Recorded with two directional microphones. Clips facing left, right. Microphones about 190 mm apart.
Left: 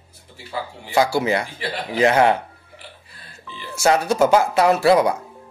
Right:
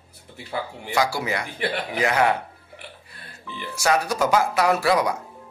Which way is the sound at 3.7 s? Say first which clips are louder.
Left 4 dB; 25° left (ahead or behind).